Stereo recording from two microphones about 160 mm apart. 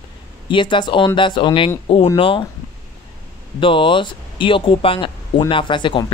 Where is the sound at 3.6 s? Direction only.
30° left (ahead or behind).